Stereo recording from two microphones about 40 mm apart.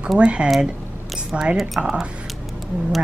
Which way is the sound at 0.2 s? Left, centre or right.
Right.